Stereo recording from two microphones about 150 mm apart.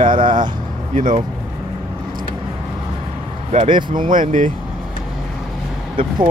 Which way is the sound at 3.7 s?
30° right (ahead or behind).